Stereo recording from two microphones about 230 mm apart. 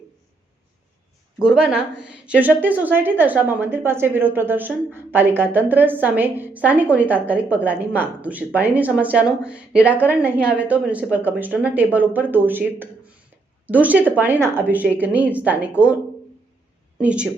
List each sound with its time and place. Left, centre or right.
1.5 s speech: centre
17.0 s speech: centre